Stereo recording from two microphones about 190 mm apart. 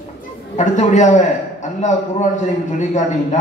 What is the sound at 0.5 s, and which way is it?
A man's voice, 40° left (ahead or behind).